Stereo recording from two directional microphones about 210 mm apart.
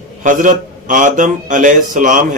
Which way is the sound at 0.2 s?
40° right (ahead or behind).